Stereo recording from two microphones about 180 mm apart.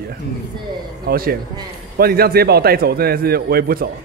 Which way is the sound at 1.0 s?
55° right (ahead or behind).